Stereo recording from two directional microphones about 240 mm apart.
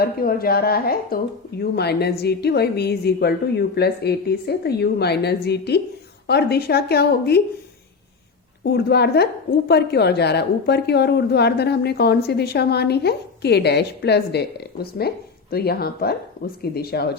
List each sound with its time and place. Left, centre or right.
0.0 s a woman's voice: left
8.6 s a woman's voice: left